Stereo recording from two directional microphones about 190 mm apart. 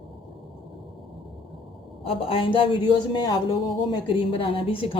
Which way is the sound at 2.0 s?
30° left (ahead or behind).